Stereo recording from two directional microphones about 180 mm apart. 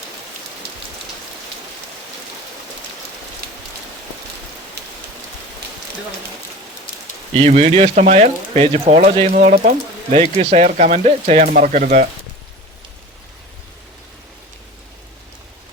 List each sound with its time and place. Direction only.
4.8 s rain: 70° right (ahead or behind)
7.3 s speech: 40° right (ahead or behind)